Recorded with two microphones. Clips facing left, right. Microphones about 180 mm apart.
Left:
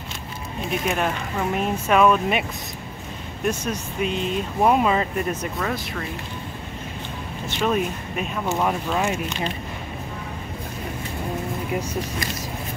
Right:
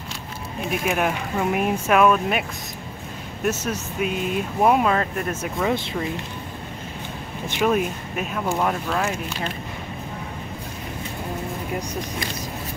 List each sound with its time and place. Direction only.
0.7 s speech: 5° right (ahead or behind)
3.4 s speech: 5° right (ahead or behind)
5.7 s speech: 25° right (ahead or behind)
7.4 s speech: 15° right (ahead or behind)
7.7 s speech: centre (ahead or behind)